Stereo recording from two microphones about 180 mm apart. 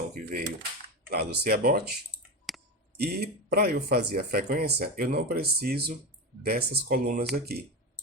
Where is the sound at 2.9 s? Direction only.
60° right (ahead or behind).